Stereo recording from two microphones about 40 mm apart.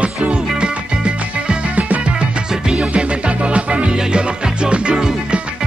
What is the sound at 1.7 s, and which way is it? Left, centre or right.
Music, right.